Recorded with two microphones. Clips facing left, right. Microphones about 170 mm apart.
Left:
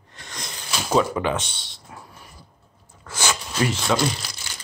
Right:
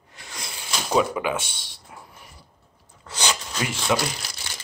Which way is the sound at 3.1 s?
15° right (ahead or behind).